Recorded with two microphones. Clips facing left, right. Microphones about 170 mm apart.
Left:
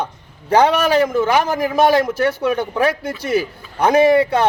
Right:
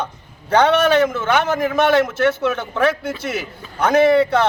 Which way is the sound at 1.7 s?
35° left (ahead or behind).